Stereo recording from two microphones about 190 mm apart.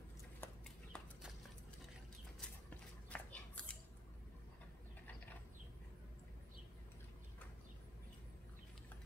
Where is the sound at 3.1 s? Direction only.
5° left (ahead or behind).